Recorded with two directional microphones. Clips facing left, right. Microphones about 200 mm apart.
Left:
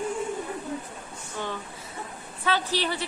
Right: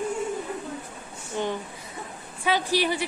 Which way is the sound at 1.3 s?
20° right (ahead or behind).